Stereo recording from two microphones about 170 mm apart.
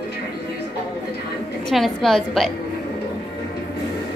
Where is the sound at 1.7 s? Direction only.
Centre (ahead or behind).